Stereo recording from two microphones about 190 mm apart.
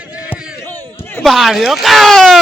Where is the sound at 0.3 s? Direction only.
10° left (ahead or behind).